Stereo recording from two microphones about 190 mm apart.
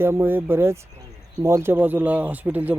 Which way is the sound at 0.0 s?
10° right (ahead or behind).